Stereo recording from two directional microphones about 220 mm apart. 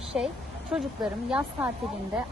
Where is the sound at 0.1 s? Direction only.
5° right (ahead or behind).